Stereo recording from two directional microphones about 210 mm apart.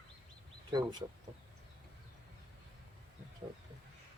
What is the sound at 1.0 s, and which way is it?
Speech, 15° right (ahead or behind).